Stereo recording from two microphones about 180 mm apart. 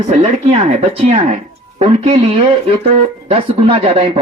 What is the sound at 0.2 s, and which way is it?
A man's voice, 35° right (ahead or behind).